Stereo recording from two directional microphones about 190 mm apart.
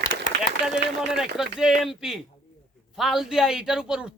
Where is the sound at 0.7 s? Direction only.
Centre (ahead or behind).